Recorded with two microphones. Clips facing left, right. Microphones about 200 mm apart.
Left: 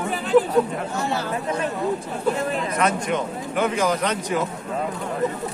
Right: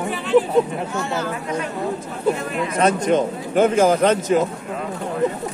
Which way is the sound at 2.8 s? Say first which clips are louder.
Right 7 dB; 40° right (ahead or behind).